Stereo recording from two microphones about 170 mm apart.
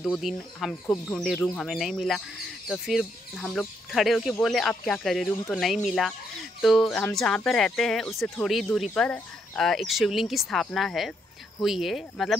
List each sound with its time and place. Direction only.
0.0 s speech: centre (ahead or behind)